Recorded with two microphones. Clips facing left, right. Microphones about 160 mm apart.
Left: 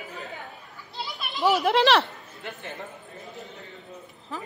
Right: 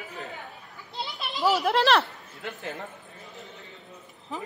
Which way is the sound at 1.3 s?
Centre (ahead or behind).